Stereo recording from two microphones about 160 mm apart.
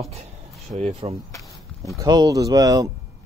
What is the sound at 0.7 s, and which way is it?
Speech, 45° right (ahead or behind).